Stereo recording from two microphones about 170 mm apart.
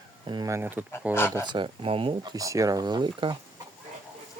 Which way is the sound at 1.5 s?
30° right (ahead or behind).